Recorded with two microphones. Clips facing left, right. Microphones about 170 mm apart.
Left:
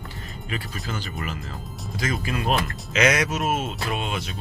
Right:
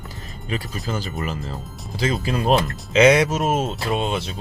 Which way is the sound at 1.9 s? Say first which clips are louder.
Right 5 dB; 30° right (ahead or behind).